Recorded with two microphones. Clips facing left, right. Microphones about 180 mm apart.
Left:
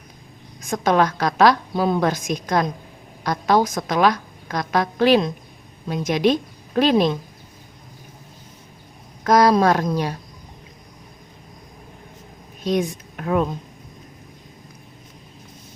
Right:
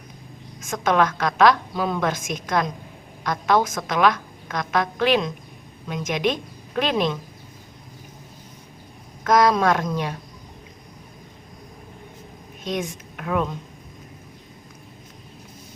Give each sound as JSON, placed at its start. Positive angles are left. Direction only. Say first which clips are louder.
{"t": 0.6, "sound": "a woman's voice", "louder": "left 2 dB", "side_deg": 35}
{"t": 9.2, "sound": "a woman's voice", "louder": "left 3 dB", "side_deg": 35}
{"t": 12.6, "sound": "speech", "louder": "left 6 dB", "side_deg": 35}